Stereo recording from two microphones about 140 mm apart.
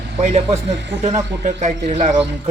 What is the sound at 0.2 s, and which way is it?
A man's voice, 55° right (ahead or behind).